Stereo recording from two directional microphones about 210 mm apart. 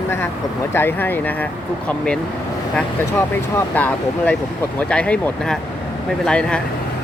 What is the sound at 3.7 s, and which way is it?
Speech, 5° left (ahead or behind).